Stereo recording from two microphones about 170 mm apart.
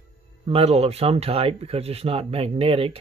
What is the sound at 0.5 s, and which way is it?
Speech, 35° right (ahead or behind).